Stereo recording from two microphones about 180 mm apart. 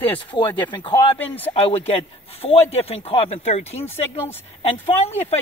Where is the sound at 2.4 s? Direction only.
35° left (ahead or behind).